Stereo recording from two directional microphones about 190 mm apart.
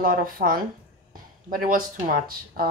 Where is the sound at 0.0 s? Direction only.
50° right (ahead or behind).